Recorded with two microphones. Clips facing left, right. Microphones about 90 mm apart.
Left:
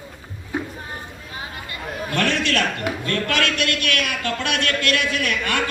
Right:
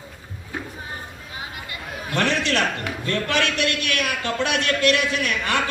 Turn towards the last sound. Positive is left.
turn(degrees=-25)  # may be behind; listen again after turning